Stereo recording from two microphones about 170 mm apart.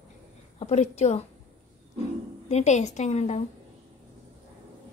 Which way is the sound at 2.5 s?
40° left (ahead or behind).